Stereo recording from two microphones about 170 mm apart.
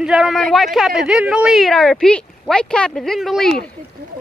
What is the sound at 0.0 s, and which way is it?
A woman's voice, 5° right (ahead or behind).